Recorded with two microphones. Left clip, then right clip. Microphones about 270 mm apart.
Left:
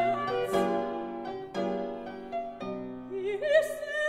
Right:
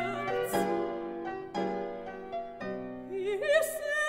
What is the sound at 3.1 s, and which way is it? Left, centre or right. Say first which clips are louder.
Opera: left 2 dB; right.